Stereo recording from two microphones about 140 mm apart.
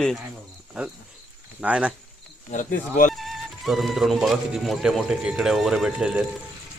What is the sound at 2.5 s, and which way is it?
Speech, 65° left (ahead or behind).